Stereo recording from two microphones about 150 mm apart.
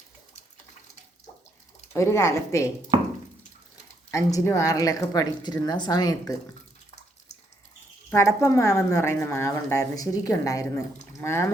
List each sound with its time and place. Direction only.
1.9 s a woman's voice: 20° left (ahead or behind)
2.9 s a sound: 25° right (ahead or behind)
4.1 s a woman's voice: 20° left (ahead or behind)
8.1 s a woman's voice: 20° left (ahead or behind)